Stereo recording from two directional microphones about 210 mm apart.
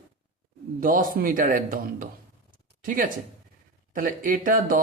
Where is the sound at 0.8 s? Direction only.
40° right (ahead or behind).